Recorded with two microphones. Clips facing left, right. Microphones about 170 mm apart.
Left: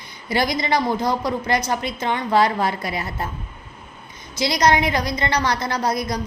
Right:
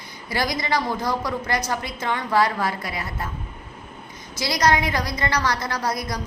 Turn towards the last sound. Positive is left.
turn(degrees=20)  # may be behind; listen again after turning